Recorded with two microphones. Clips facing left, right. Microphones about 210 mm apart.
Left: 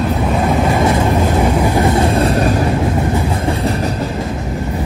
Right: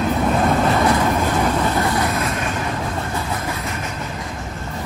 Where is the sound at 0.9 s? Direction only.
30° left (ahead or behind).